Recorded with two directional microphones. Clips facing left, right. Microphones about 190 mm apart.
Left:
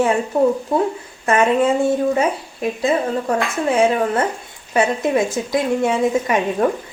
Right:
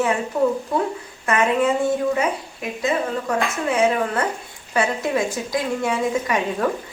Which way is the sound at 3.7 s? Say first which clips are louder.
Left 3 dB; 30° left (ahead or behind).